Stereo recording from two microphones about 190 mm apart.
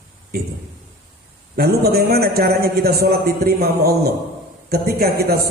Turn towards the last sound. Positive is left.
turn(degrees=-55)  # may be behind; listen again after turning